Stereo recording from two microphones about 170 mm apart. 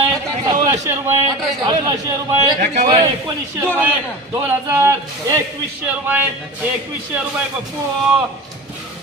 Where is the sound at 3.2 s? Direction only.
15° right (ahead or behind).